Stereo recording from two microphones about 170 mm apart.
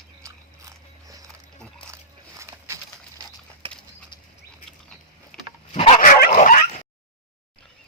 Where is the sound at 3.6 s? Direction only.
30° right (ahead or behind).